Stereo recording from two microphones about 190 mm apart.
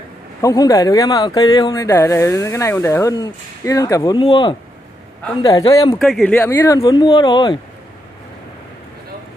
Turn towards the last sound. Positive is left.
turn(degrees=25)  # may be behind; listen again after turning